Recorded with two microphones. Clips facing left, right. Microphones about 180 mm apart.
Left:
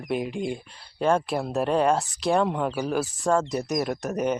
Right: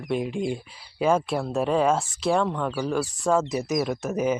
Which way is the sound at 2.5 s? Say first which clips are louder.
Left 1 dB; 15° left (ahead or behind).